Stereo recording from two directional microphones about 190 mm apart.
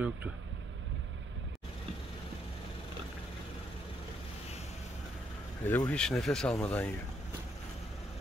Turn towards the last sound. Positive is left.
turn(degrees=10)  # may be behind; listen again after turning